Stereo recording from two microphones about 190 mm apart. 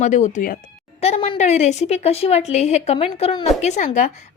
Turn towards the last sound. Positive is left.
turn(degrees=40)  # may be behind; listen again after turning